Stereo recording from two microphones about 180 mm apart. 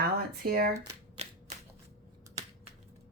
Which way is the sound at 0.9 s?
35° right (ahead or behind).